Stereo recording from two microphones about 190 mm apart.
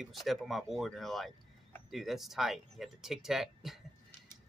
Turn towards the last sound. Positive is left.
turn(degrees=0)  # may be behind; listen again after turning